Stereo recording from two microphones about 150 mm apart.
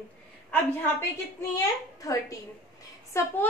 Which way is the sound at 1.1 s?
20° left (ahead or behind).